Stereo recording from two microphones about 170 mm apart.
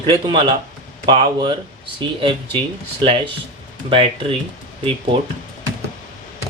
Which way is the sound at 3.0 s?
30° right (ahead or behind).